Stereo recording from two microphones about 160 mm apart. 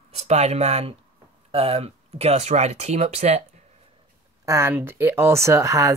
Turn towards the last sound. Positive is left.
turn(degrees=-20)  # may be behind; listen again after turning